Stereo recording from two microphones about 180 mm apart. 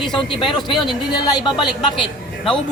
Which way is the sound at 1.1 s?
25° left (ahead or behind).